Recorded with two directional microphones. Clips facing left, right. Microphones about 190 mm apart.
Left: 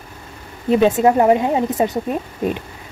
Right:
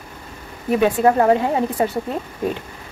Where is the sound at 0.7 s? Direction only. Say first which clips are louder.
Left 2 dB; 25° left (ahead or behind).